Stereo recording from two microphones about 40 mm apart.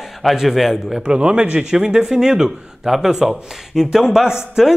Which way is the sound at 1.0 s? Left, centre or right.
Right.